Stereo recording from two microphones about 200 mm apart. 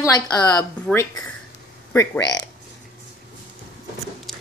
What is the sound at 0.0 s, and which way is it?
Speech, 20° left (ahead or behind).